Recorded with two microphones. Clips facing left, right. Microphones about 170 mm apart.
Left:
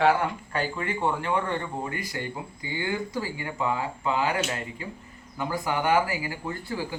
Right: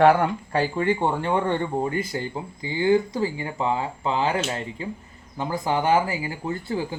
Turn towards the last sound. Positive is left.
turn(degrees=-20)  # may be behind; listen again after turning